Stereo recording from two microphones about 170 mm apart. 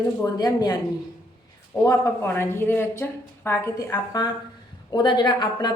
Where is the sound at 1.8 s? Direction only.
15° left (ahead or behind).